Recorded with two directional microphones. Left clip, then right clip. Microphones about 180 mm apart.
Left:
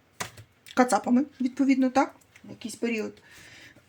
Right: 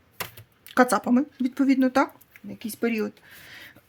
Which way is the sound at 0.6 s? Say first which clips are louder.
Right 2 dB; 30° right (ahead or behind).